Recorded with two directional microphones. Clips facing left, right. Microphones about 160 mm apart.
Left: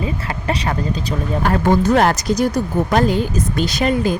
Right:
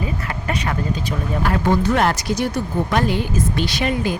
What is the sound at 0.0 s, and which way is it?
Speech, 30° left (ahead or behind).